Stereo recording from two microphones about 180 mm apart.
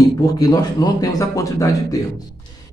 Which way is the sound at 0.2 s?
20° left (ahead or behind).